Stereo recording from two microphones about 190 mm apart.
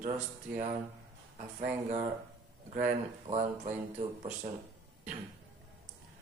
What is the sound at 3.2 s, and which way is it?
Speech, 35° right (ahead or behind).